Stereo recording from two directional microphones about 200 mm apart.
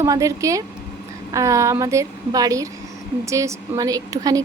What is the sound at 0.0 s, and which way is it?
A woman's voice, 15° right (ahead or behind).